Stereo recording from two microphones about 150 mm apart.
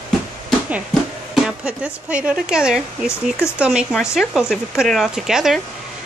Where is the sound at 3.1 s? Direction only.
15° left (ahead or behind).